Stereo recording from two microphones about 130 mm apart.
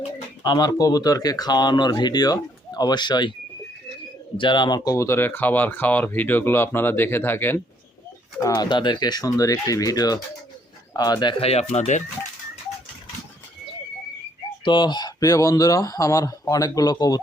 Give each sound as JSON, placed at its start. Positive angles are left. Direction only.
{"t": 0.4, "sound": "speech", "side_deg": 30}
{"t": 4.4, "sound": "speech", "side_deg": 35}
{"t": 8.5, "sound": "speech", "side_deg": 35}
{"t": 11.4, "sound": "speech", "side_deg": 55}
{"t": 14.6, "sound": "speech", "side_deg": 35}